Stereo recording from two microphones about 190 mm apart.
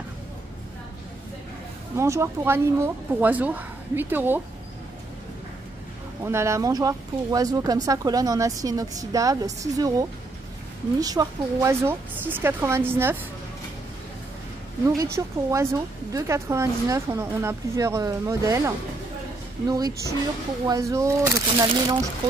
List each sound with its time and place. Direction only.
2.0 s speech: 15° right (ahead or behind)
6.2 s speech: 15° right (ahead or behind)
15.0 s speech: 15° right (ahead or behind)
19.7 s speech: 20° right (ahead or behind)